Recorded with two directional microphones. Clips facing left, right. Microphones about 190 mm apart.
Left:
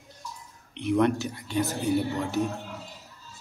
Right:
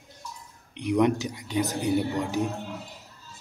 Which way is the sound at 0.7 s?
15° right (ahead or behind).